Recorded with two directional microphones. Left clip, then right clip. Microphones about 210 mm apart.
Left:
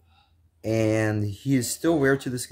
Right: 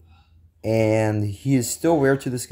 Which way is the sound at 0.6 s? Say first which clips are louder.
Right 4 dB; centre (ahead or behind).